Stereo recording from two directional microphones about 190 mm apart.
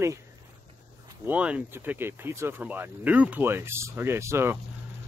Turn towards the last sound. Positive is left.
turn(degrees=-15)  # may be behind; listen again after turning